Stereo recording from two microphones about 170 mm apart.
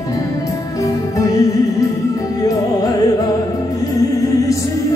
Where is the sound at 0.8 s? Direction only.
20° left (ahead or behind).